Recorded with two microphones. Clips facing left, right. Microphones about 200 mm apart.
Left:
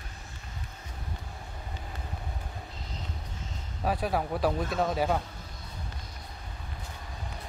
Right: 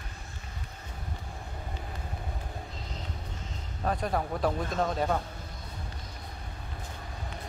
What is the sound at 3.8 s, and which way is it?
Speech, 5° left (ahead or behind).